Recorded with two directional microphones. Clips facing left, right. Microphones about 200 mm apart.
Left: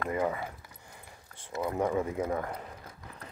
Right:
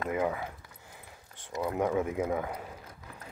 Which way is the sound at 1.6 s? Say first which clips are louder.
Even; centre (ahead or behind).